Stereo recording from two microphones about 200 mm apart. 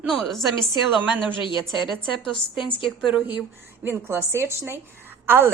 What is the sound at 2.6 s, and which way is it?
Speech, 25° left (ahead or behind).